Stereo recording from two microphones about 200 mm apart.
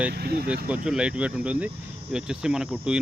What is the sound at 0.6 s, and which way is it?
Speech, 5° right (ahead or behind).